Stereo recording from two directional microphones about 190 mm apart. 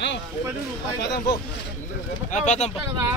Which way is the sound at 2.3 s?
40° left (ahead or behind).